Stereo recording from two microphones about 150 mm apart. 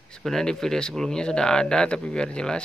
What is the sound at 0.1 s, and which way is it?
Speech, 5° left (ahead or behind).